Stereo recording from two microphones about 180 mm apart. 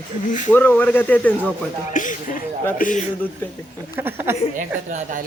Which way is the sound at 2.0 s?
45° left (ahead or behind).